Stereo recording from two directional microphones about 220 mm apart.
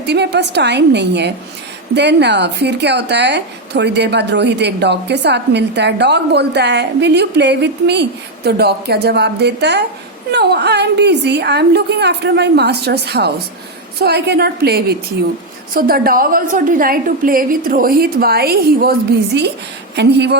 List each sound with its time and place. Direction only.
0.0 s a woman's voice: 50° right (ahead or behind)